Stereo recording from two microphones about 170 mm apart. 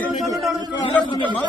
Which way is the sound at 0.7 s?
25° left (ahead or behind).